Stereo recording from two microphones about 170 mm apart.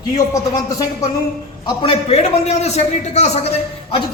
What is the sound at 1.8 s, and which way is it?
A man's voice, 40° left (ahead or behind).